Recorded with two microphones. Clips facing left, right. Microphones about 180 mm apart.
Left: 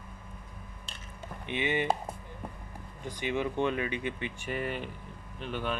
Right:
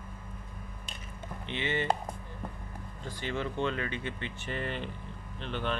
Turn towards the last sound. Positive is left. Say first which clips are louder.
# even
turn(degrees=10)  # may be behind; listen again after turning